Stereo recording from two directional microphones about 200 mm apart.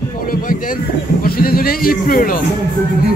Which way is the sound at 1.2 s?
45° left (ahead or behind).